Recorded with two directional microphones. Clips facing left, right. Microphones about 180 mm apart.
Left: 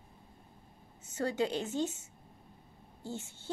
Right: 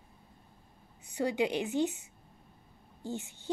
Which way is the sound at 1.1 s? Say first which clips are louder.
Right 2 dB; 15° right (ahead or behind).